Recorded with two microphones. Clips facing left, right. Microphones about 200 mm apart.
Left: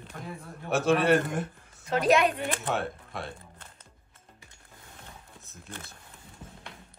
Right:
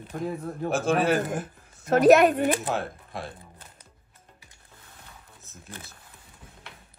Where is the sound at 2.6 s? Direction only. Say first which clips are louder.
Right 1 dB; centre (ahead or behind).